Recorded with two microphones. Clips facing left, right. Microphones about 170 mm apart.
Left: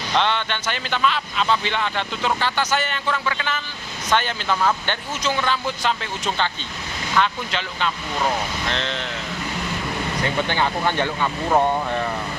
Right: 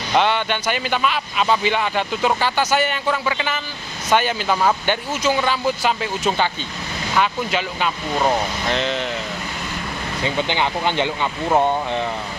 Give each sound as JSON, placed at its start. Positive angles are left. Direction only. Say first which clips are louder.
{"t": 0.1, "sound": "speech", "louder": "right 4 dB", "side_deg": -10}
{"t": 10.2, "sound": "speech", "louder": "right 2 dB", "side_deg": -15}